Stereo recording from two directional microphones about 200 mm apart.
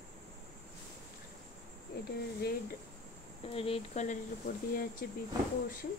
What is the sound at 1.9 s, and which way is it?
Cricket, 50° left (ahead or behind).